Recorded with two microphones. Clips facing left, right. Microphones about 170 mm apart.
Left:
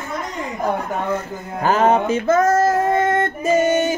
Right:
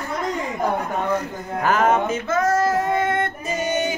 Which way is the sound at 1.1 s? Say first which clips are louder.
Right 1 dB; 30° left (ahead or behind).